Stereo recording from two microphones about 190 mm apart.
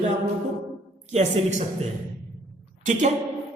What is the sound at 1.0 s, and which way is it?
A woman's voice, 40° right (ahead or behind).